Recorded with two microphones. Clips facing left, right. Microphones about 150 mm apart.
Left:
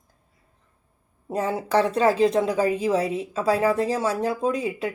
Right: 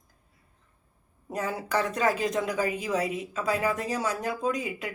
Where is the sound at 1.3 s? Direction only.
25° left (ahead or behind).